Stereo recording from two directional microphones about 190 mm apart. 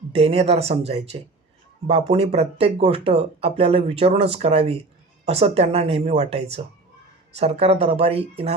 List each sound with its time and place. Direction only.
0.1 s speech: 30° right (ahead or behind)